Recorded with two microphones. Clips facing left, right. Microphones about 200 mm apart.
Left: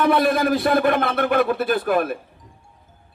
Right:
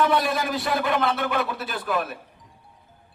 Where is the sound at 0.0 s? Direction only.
55° left (ahead or behind).